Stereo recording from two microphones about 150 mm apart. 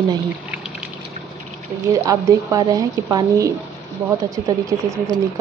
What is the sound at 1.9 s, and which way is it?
A woman's voice, 20° right (ahead or behind).